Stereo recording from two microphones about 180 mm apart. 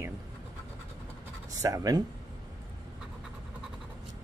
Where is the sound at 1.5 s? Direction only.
20° right (ahead or behind).